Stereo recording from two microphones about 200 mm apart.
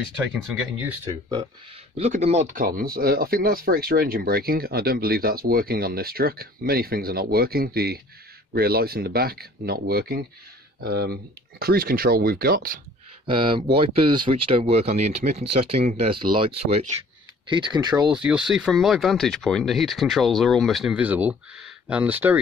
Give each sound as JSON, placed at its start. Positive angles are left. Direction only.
{"t": 2.0, "sound": "speech", "side_deg": -35}
{"t": 13.3, "sound": "speech", "side_deg": -25}
{"t": 18.1, "sound": "speech", "side_deg": -5}